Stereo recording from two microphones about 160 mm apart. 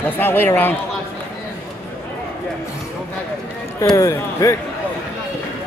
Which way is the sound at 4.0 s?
20° left (ahead or behind).